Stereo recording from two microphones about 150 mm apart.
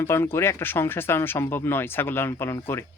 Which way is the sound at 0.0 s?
15° left (ahead or behind).